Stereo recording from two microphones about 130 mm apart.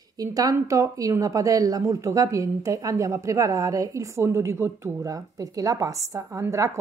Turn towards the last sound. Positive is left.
turn(degrees=-25)  # may be behind; listen again after turning